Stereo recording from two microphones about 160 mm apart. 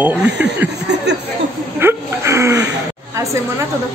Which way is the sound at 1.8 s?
15° right (ahead or behind).